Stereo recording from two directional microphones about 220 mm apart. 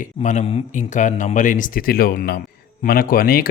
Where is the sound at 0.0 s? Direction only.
35° left (ahead or behind).